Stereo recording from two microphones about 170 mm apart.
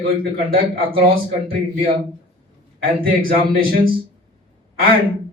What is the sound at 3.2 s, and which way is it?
Speech, 60° right (ahead or behind).